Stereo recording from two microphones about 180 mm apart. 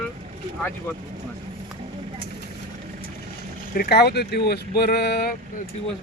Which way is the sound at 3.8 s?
60° left (ahead or behind).